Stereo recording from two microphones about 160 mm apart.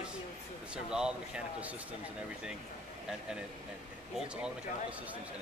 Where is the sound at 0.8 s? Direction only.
5° right (ahead or behind).